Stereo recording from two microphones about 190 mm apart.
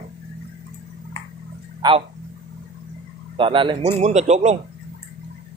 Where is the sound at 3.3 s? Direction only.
25° right (ahead or behind).